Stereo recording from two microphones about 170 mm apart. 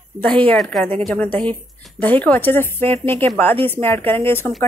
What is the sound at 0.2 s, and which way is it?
A woman's voice, 10° left (ahead or behind).